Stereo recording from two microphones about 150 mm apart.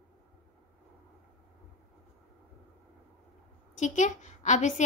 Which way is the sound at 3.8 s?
55° left (ahead or behind).